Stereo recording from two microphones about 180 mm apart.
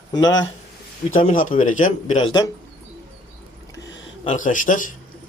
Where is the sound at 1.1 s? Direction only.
45° left (ahead or behind).